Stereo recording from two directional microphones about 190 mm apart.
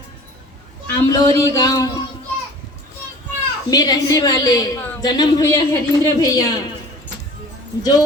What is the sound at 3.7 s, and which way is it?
A woman's voice, 20° left (ahead or behind).